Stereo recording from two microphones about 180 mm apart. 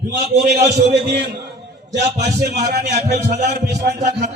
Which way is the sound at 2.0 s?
65° right (ahead or behind).